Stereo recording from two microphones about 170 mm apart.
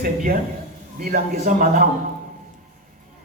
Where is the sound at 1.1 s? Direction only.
55° right (ahead or behind).